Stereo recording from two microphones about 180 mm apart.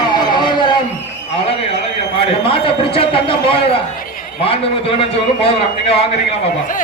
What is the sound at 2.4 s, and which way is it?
A man's voice, 30° left (ahead or behind).